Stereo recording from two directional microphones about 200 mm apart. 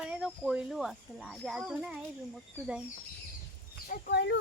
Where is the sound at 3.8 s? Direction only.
50° left (ahead or behind).